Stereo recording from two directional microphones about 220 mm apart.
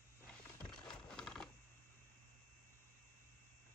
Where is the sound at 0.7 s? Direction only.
5° left (ahead or behind).